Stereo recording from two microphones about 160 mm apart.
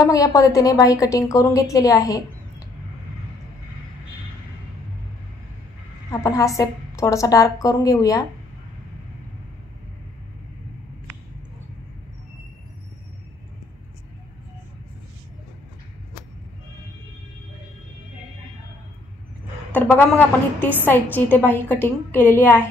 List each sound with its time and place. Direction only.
0.0 s a woman's voice: 20° left (ahead or behind)
6.2 s a woman's voice: 20° left (ahead or behind)
19.7 s a woman's voice: 10° left (ahead or behind)